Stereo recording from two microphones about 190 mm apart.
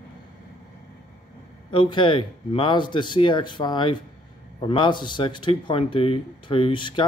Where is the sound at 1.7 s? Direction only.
25° left (ahead or behind).